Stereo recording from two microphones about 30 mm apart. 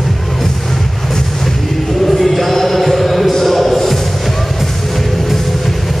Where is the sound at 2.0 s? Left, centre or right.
Centre.